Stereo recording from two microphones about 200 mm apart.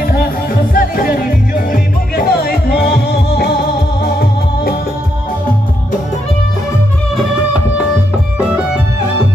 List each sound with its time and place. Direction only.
0.7 s music: 45° left (ahead or behind)